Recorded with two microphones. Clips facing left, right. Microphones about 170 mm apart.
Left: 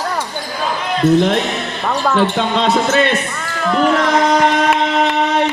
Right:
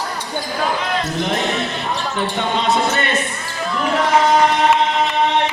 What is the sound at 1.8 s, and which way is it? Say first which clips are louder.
Speech: left 7 dB; 70° left (ahead or behind).